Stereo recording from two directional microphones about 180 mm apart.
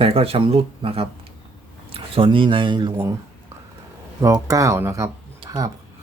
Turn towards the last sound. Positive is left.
turn(degrees=-20)  # may be behind; listen again after turning